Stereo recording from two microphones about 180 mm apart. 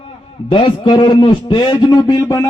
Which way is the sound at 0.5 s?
30° left (ahead or behind).